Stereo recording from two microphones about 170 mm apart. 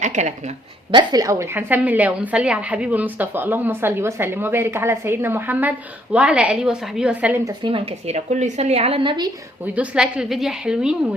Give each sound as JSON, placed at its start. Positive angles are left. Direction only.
{"t": 0.0, "sound": "a woman's voice", "side_deg": -45}
{"t": 0.9, "sound": "a woman's voice", "side_deg": -25}
{"t": 7.6, "sound": "a woman's voice", "side_deg": -35}
{"t": 9.7, "sound": "a woman's voice", "side_deg": -5}